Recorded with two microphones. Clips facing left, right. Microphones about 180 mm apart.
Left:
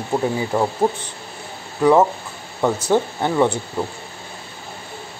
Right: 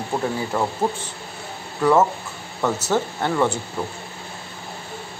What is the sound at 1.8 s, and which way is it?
Speech, 15° left (ahead or behind).